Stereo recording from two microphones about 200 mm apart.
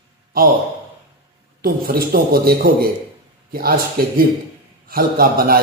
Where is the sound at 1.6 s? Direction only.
45° right (ahead or behind).